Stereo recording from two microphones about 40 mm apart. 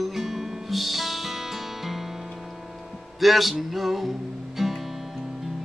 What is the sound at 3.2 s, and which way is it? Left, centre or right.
Music, centre.